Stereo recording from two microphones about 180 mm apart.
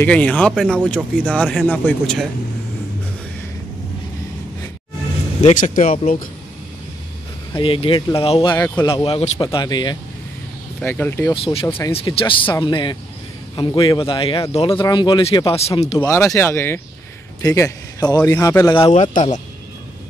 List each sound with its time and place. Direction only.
0.0 s a man's voice: 10° left (ahead or behind)
5.4 s speech: 45° left (ahead or behind)
7.5 s speech: 30° left (ahead or behind)
8.5 s a man's voice: 10° left (ahead or behind)
8.8 s speech: 30° left (ahead or behind)
10.8 s a man's voice: 10° left (ahead or behind)
11.9 s speech: 30° left (ahead or behind)
16.0 s a man's voice: 15° left (ahead or behind)
18.8 s speech: 40° left (ahead or behind)